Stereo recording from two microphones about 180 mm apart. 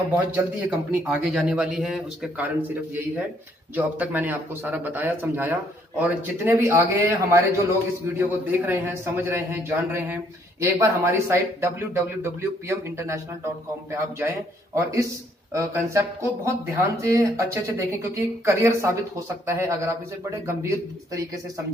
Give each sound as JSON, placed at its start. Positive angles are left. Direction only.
{"t": 0.1, "sound": "a man's voice", "side_deg": -10}